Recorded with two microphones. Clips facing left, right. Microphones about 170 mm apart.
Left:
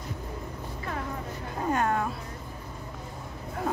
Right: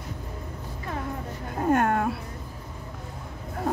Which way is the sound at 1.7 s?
55° right (ahead or behind).